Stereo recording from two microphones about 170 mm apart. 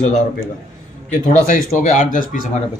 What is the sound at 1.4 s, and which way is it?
Speech, 50° left (ahead or behind).